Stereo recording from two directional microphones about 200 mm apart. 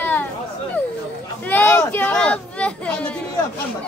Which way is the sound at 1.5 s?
10° left (ahead or behind).